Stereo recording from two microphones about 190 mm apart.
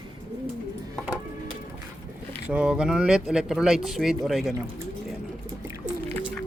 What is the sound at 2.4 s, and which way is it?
Speech, 5° right (ahead or behind).